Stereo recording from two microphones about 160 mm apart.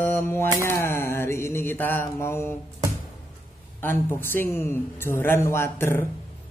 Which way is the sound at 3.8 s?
15° left (ahead or behind).